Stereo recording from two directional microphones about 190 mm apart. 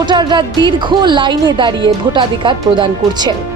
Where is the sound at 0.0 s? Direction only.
25° right (ahead or behind).